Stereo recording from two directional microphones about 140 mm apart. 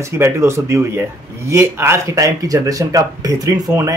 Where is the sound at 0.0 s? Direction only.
20° right (ahead or behind).